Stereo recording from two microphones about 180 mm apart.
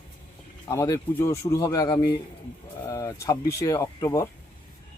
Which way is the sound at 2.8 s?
20° left (ahead or behind).